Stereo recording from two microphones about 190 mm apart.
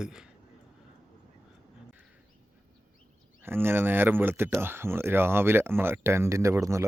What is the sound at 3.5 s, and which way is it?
Speech, 10° right (ahead or behind).